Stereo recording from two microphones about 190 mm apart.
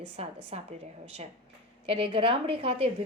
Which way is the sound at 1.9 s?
30° right (ahead or behind).